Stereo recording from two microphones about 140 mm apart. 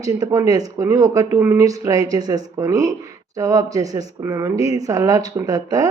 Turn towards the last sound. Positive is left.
turn(degrees=-25)  # may be behind; listen again after turning